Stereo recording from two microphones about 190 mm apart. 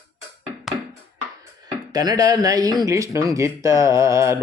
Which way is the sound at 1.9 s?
20° right (ahead or behind).